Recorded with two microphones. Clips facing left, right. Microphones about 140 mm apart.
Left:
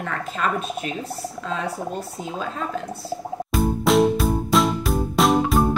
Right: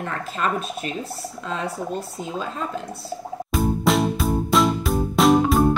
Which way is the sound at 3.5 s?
Centre (ahead or behind).